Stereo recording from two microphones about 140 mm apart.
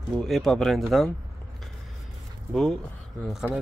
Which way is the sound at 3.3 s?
5° right (ahead or behind).